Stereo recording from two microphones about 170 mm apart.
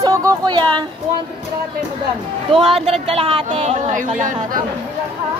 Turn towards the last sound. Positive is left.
turn(degrees=-45)  # may be behind; listen again after turning